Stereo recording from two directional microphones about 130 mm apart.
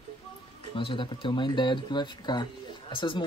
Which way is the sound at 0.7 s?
40° left (ahead or behind).